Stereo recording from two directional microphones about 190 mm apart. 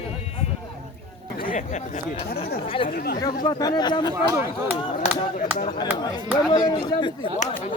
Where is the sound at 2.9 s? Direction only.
55° left (ahead or behind).